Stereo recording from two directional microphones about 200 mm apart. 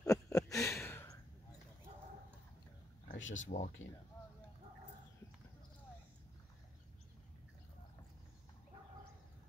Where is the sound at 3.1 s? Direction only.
70° left (ahead or behind).